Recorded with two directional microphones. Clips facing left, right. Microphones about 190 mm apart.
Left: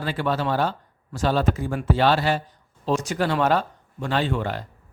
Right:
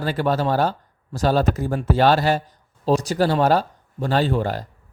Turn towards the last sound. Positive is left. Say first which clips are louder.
# right 4 dB
turn(degrees=-40)  # may be behind; listen again after turning